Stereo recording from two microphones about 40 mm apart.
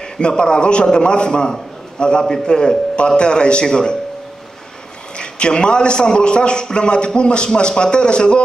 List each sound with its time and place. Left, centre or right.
0.0 s a man's voice: left
5.1 s a man's voice: left